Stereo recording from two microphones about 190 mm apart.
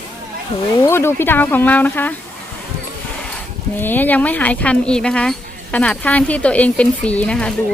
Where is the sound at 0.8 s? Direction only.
15° left (ahead or behind).